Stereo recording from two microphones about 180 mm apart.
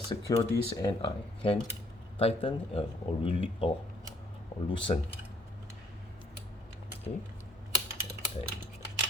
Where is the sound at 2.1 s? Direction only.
30° left (ahead or behind).